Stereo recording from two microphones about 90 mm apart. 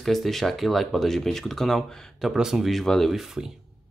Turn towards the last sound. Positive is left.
turn(degrees=-5)  # may be behind; listen again after turning